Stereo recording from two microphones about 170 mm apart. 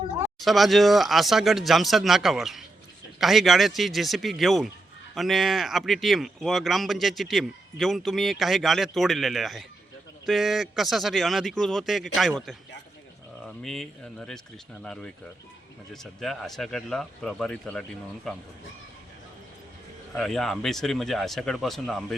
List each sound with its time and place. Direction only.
0.3 s speech: centre (ahead or behind)
15.9 s speech: centre (ahead or behind)
20.1 s speech: centre (ahead or behind)